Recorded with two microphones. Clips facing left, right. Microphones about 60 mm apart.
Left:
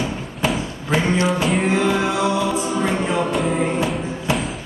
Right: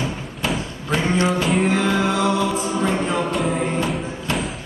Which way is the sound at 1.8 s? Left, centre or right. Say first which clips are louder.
Left 1 dB; centre.